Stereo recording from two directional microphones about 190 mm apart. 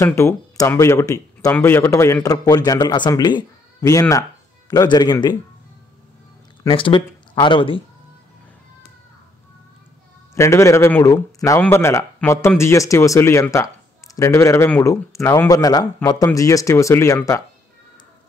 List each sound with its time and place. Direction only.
0.0 s a man's voice: 15° left (ahead or behind)
6.6 s speech: 25° left (ahead or behind)
10.3 s a man's voice: 15° left (ahead or behind)